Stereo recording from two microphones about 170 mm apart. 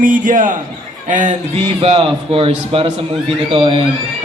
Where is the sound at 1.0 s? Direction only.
50° right (ahead or behind).